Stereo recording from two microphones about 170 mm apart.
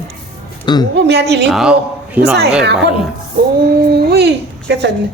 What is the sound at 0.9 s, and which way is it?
Speech, 80° right.